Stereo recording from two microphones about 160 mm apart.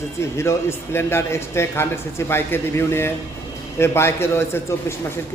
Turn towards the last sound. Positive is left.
turn(degrees=15)  # may be behind; listen again after turning